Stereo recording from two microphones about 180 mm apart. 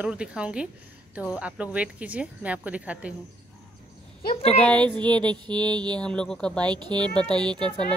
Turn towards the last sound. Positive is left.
turn(degrees=5)  # may be behind; listen again after turning